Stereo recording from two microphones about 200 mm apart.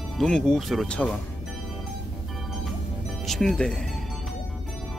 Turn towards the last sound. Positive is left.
turn(degrees=0)  # may be behind; listen again after turning